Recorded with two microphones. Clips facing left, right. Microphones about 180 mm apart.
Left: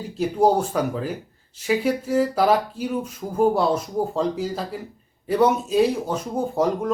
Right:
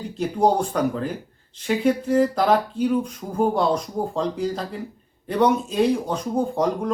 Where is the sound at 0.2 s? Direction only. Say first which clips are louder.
Left 1 dB; 5° left (ahead or behind).